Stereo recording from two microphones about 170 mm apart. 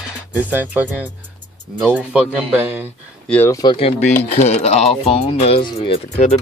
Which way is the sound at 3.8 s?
40° left (ahead or behind).